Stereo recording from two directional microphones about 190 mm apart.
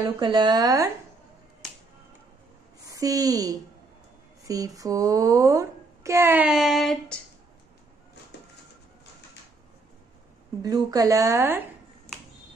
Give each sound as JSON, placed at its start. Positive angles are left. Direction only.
{"t": 0.2, "sound": "a woman's voice", "side_deg": -25}
{"t": 2.9, "sound": "a woman's voice", "side_deg": -20}
{"t": 10.6, "sound": "speech", "side_deg": -20}